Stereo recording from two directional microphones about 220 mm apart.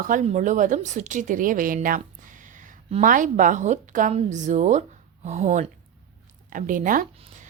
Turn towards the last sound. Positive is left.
turn(degrees=-35)  # may be behind; listen again after turning